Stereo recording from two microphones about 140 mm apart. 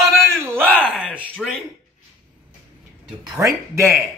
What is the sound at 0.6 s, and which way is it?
Speech, 10° left (ahead or behind).